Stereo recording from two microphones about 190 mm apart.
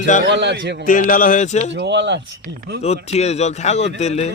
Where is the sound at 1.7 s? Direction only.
65° right (ahead or behind).